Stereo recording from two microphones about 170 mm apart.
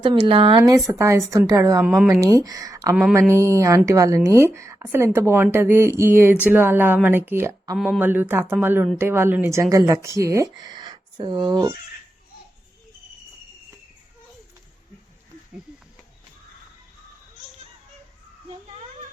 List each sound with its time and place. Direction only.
0.0 s a woman's voice: 30° right (ahead or behind); by 2.1 s 10° right (ahead or behind)
2.2 s speech: 20° right (ahead or behind)
2.9 s speech: 5° right (ahead or behind)
3.2 s a woman's voice: 15° right (ahead or behind)